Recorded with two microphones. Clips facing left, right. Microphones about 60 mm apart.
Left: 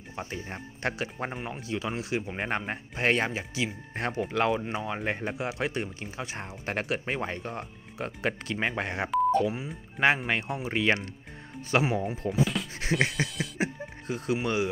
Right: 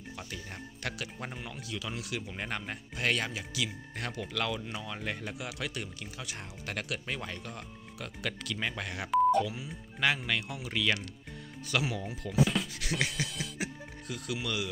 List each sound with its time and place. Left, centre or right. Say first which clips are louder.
0.1 s speech: left 7 dB; left